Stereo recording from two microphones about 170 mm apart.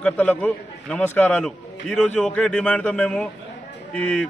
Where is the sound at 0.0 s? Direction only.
10° left (ahead or behind).